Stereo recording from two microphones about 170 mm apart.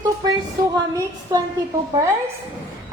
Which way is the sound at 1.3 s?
20° right (ahead or behind).